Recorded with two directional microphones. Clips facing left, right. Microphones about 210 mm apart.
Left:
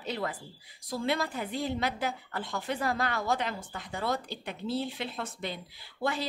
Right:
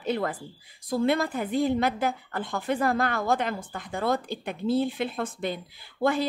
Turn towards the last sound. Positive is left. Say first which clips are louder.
# right 7 dB
turn(degrees=-50)  # may be behind; listen again after turning